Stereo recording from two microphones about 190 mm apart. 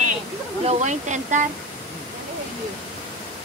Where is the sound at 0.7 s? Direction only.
40° right (ahead or behind).